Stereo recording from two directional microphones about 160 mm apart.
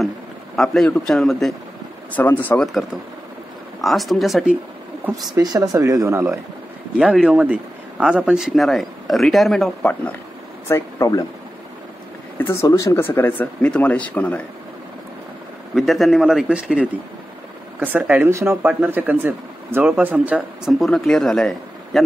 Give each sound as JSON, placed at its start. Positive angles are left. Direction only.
{"t": 0.6, "sound": "speech", "side_deg": 0}
{"t": 3.8, "sound": "speech", "side_deg": 0}
{"t": 5.3, "sound": "speech", "side_deg": -25}
{"t": 7.0, "sound": "speech", "side_deg": -5}
{"t": 10.7, "sound": "speech", "side_deg": 20}
{"t": 12.4, "sound": "speech", "side_deg": 15}
{"t": 15.7, "sound": "speech", "side_deg": 0}